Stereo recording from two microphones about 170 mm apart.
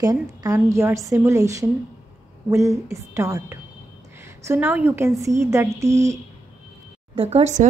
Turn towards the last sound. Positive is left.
turn(degrees=-40)  # may be behind; listen again after turning